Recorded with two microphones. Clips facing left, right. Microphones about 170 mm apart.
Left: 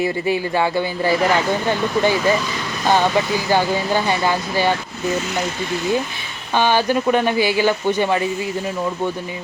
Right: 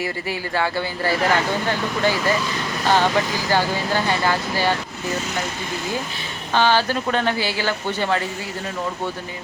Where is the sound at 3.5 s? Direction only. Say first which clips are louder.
Left 3 dB; 15° left (ahead or behind).